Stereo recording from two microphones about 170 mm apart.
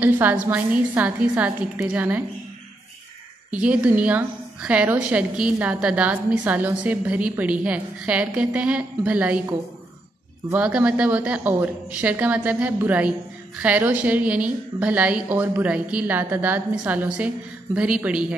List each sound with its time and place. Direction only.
0.0 s a woman's voice: 10° right (ahead or behind)
3.5 s a woman's voice: 5° right (ahead or behind)